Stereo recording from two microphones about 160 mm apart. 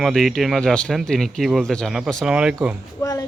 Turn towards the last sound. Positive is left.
turn(degrees=20)  # may be behind; listen again after turning